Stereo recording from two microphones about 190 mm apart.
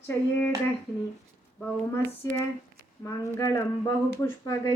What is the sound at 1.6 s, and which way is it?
A woman's voice, 10° left (ahead or behind).